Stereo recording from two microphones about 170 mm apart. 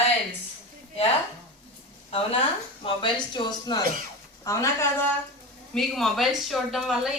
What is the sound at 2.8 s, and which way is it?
Speech, 25° left (ahead or behind).